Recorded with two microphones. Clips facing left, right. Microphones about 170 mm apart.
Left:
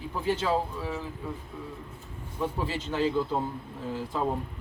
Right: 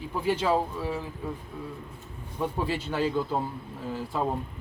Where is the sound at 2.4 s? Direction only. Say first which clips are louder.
Right 2 dB; 10° right (ahead or behind).